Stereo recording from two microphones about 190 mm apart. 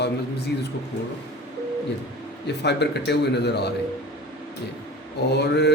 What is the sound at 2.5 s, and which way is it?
A man's voice, 60° left (ahead or behind).